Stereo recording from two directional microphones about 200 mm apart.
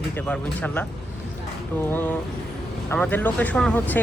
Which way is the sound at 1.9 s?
10° left (ahead or behind).